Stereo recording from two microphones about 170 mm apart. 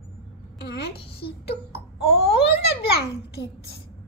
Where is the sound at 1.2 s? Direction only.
70° left (ahead or behind).